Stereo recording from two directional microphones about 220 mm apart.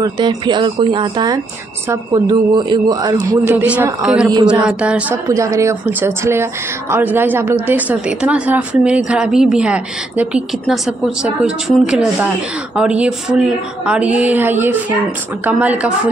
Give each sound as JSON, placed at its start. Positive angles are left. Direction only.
{"t": 0.0, "sound": "a man's voice", "side_deg": -20}